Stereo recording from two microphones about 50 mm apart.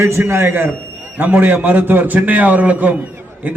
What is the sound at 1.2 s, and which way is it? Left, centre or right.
A man's voice, right.